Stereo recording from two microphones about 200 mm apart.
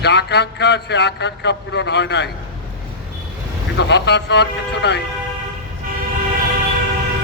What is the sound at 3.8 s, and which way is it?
A man's voice, 60° left (ahead or behind).